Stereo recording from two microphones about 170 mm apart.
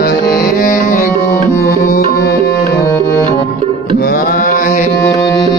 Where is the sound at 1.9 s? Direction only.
60° left (ahead or behind).